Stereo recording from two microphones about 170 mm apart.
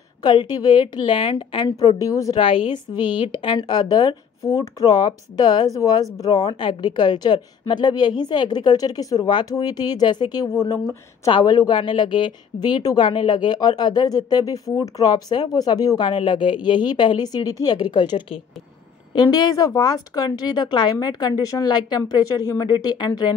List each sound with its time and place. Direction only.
0.2 s speech: 25° left (ahead or behind)
2.3 s speech: 30° left (ahead or behind)